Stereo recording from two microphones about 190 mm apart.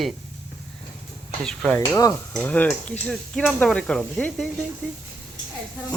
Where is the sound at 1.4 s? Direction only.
5° left (ahead or behind).